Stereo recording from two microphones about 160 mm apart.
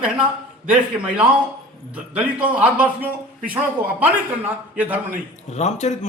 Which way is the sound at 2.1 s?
10° right (ahead or behind).